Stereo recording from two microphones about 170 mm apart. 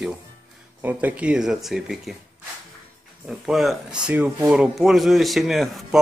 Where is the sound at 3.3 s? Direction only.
Centre (ahead or behind).